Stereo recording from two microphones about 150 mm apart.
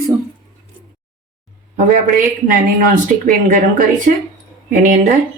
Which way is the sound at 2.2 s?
60° right (ahead or behind).